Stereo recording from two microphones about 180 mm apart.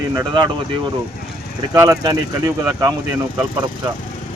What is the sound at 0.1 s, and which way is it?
Speech, 20° right (ahead or behind).